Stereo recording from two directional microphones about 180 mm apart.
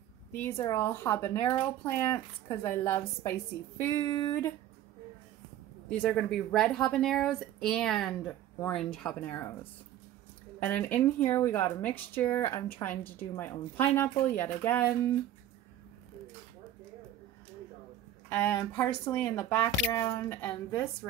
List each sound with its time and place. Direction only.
0.3 s speech: 15° left (ahead or behind)
3.8 s a sound: 20° left (ahead or behind)
5.9 s speech: 5° left (ahead or behind)
18.3 s speech: 10° left (ahead or behind)